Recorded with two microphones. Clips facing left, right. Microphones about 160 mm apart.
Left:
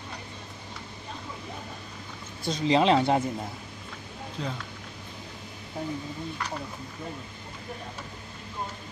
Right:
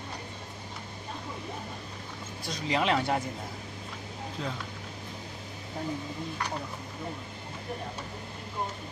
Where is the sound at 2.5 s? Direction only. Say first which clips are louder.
Left 6 dB; 25° left (ahead or behind).